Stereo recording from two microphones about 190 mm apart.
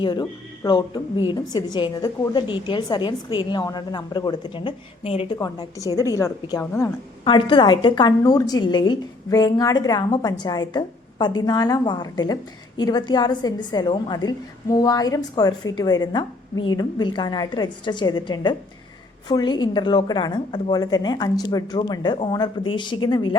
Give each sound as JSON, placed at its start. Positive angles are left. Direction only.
{"t": 0.0, "sound": "a woman's voice", "side_deg": 20}